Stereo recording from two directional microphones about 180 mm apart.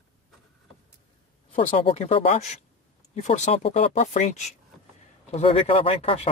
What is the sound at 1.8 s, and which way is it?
Speech, 35° left (ahead or behind).